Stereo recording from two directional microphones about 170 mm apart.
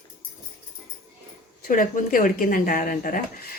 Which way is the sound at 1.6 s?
55° left (ahead or behind).